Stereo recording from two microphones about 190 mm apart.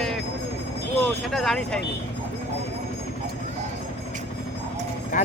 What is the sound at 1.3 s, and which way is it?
Speech, centre (ahead or behind).